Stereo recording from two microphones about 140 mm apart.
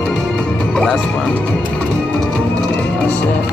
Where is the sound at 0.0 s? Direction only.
5° left (ahead or behind).